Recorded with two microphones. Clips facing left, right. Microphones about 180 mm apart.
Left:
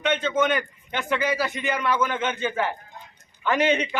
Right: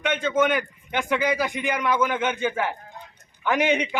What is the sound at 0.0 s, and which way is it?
A man's voice, 10° right (ahead or behind).